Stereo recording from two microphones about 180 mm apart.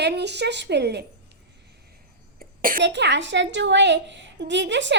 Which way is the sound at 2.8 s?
75° right (ahead or behind).